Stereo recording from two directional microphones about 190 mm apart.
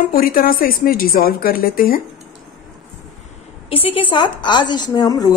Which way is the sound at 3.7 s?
30° left (ahead or behind).